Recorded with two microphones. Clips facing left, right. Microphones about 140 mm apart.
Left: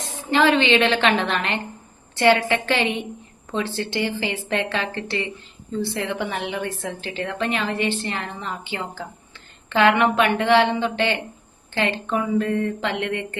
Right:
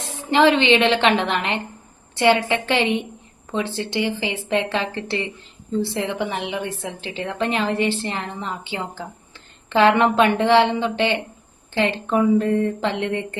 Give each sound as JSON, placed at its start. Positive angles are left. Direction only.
{"t": 0.3, "sound": "a woman's voice", "side_deg": -25}